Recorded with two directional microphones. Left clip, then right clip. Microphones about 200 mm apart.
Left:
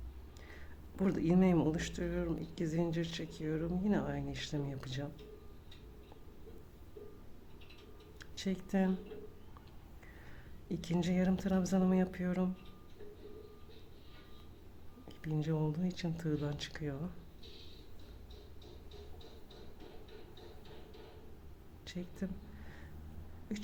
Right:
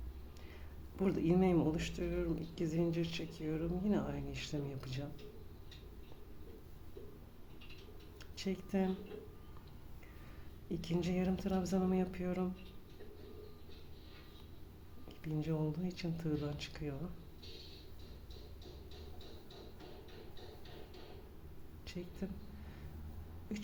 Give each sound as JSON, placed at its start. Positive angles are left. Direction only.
{"t": 0.9, "sound": "speech", "side_deg": 20}
{"t": 8.2, "sound": "speech", "side_deg": 20}
{"t": 10.7, "sound": "speech", "side_deg": 20}
{"t": 15.2, "sound": "speech", "side_deg": 20}
{"t": 21.8, "sound": "speech", "side_deg": 20}
{"t": 23.5, "sound": "music", "side_deg": 20}